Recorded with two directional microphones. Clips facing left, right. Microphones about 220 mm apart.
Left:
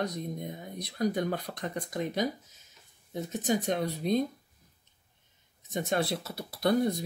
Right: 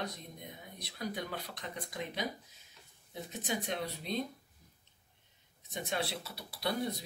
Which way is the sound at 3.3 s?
45° left (ahead or behind).